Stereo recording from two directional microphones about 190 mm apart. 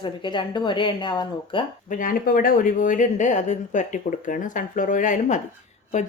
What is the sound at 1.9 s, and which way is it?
Speech, 45° left (ahead or behind).